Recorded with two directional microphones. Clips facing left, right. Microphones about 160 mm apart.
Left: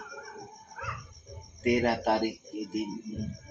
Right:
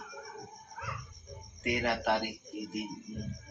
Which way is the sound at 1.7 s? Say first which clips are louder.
Left 5 dB; 35° left (ahead or behind).